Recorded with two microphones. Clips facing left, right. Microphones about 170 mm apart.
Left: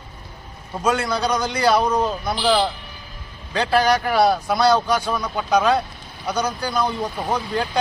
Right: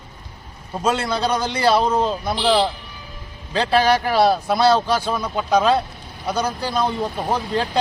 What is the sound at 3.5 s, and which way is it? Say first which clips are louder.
Speech: right 1 dB; 30° right (ahead or behind).